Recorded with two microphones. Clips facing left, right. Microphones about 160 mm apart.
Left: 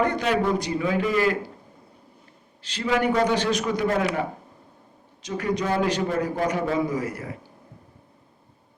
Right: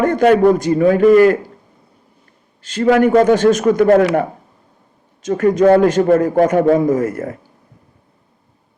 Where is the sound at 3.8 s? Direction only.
75° right (ahead or behind).